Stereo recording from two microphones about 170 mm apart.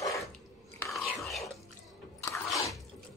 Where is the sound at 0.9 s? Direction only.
Centre (ahead or behind).